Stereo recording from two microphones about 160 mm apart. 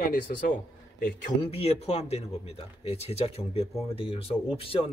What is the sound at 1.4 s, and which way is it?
Speech, 40° left (ahead or behind).